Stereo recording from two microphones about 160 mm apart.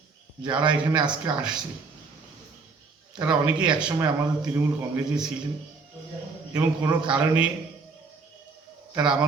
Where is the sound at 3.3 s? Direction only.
5° right (ahead or behind).